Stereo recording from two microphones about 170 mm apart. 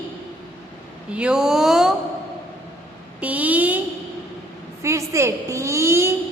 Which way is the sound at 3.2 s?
10° right (ahead or behind).